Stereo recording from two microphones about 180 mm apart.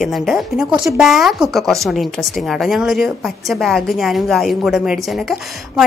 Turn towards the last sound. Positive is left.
turn(degrees=0)  # may be behind; listen again after turning